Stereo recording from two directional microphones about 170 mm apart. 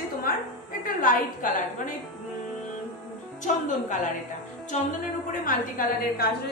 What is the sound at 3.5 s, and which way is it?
Music, 45° left (ahead or behind).